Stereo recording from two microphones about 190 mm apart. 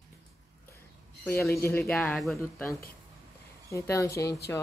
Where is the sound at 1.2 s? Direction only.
15° left (ahead or behind).